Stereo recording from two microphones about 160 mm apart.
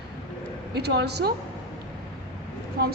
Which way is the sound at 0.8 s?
90° right.